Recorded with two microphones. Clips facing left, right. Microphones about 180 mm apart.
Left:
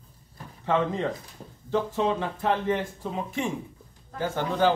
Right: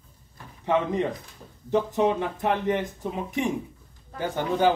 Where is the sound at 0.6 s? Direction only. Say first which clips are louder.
Right 1 dB; 15° right (ahead or behind).